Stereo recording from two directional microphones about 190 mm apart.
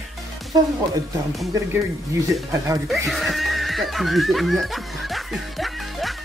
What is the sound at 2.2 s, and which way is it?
Speech, 15° right (ahead or behind).